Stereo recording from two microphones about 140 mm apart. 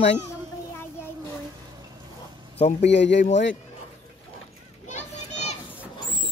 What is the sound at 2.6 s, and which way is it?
Speech, 55° left (ahead or behind).